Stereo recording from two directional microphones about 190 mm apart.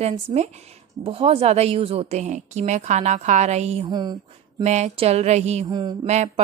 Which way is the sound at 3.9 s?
20° right (ahead or behind).